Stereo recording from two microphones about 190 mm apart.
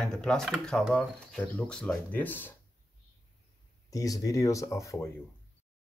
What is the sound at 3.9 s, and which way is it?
Speech, 20° left (ahead or behind).